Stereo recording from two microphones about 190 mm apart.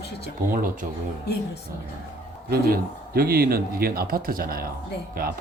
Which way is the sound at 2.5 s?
55° right (ahead or behind).